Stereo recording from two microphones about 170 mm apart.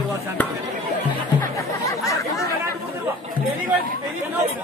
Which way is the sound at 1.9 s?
20° left (ahead or behind).